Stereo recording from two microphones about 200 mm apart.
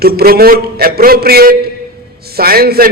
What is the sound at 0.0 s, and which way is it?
A man's voice, 50° right (ahead or behind).